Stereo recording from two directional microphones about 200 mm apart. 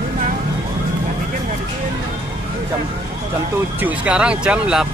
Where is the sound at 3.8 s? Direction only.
5° right (ahead or behind).